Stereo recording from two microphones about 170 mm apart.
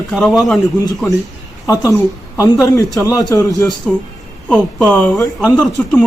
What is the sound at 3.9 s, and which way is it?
A man's voice, centre (ahead or behind).